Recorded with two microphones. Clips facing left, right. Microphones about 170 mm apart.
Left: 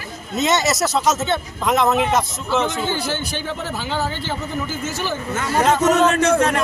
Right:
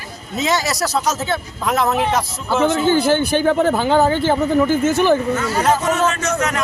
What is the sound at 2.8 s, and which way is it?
Speech, 55° right (ahead or behind).